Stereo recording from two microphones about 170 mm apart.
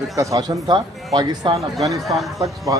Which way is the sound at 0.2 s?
20° right (ahead or behind).